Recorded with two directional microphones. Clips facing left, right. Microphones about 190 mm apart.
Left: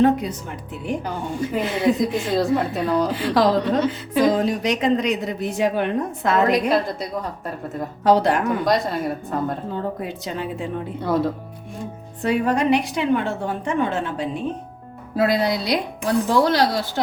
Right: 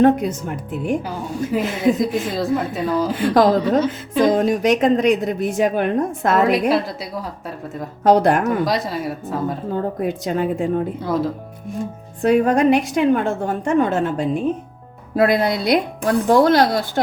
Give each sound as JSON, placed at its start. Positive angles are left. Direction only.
{"t": 0.0, "sound": "a woman's voice", "side_deg": -50}
{"t": 1.5, "sound": "a woman's voice", "side_deg": 0}
{"t": 3.2, "sound": "a woman's voice", "side_deg": -50}
{"t": 3.6, "sound": "a woman's voice", "side_deg": 0}
{"t": 4.4, "sound": "a woman's voice", "side_deg": -50}
{"t": 6.5, "sound": "a woman's voice", "side_deg": -5}
{"t": 8.0, "sound": "a woman's voice", "side_deg": -50}
{"t": 8.6, "sound": "a woman's voice", "side_deg": 0}
{"t": 9.7, "sound": "a woman's voice", "side_deg": -50}
{"t": 11.0, "sound": "a woman's voice", "side_deg": 0}
{"t": 12.2, "sound": "a woman's voice", "side_deg": -50}
{"t": 15.1, "sound": "a woman's voice", "side_deg": -55}